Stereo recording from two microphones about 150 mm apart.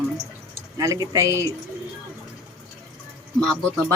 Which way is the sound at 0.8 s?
20° right (ahead or behind).